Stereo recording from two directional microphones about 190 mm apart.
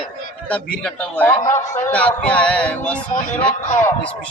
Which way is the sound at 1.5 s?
40° left (ahead or behind).